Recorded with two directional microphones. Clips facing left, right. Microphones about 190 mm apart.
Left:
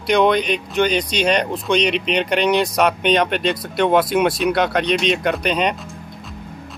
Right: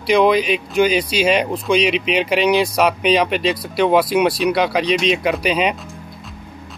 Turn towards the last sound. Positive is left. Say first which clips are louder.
# right 1 dB
turn(degrees=-5)  # may be behind; listen again after turning